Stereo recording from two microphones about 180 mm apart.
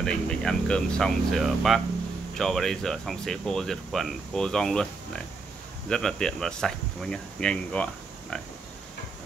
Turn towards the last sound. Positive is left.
turn(degrees=5)  # may be behind; listen again after turning